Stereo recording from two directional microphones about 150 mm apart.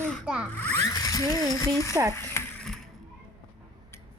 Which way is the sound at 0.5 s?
10° left (ahead or behind).